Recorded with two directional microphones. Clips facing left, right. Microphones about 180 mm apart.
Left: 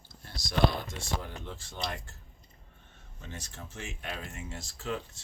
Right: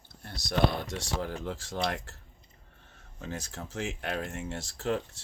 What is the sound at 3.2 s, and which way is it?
Speech, 90° right.